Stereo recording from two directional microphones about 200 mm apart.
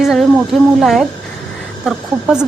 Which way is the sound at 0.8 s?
Centre (ahead or behind).